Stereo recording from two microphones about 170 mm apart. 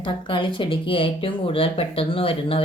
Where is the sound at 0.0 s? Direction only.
30° left (ahead or behind).